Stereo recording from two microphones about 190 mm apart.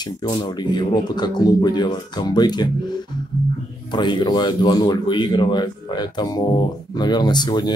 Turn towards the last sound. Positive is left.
turn(degrees=20)  # may be behind; listen again after turning